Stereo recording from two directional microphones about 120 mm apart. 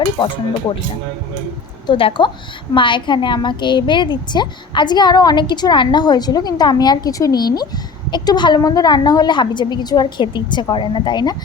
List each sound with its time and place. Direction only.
0.2 s a woman's voice: 45° left (ahead or behind)
1.9 s a woman's voice: 45° left (ahead or behind)